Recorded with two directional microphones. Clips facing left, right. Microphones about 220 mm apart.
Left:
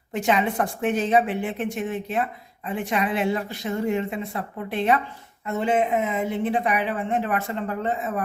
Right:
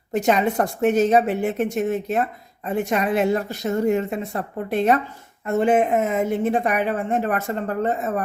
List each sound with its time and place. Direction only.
0.1 s a woman's voice: 40° right (ahead or behind)